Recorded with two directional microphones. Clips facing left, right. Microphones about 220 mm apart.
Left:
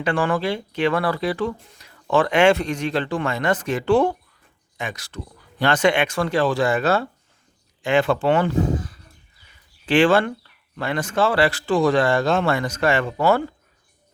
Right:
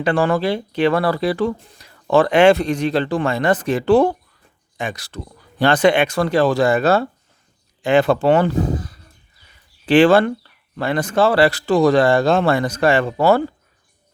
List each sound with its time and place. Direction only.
0.0 s speech: 35° right (ahead or behind)